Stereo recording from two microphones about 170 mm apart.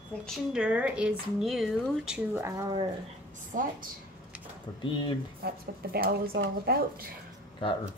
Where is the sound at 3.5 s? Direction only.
50° right (ahead or behind).